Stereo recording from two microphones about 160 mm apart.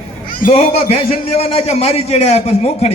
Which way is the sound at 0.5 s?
40° left (ahead or behind).